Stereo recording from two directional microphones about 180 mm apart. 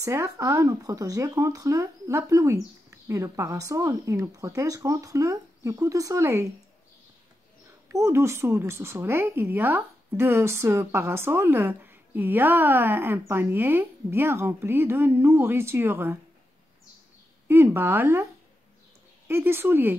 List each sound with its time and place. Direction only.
0.0 s speech: 15° right (ahead or behind)
7.9 s speech: 15° right (ahead or behind)
17.5 s speech: 15° right (ahead or behind)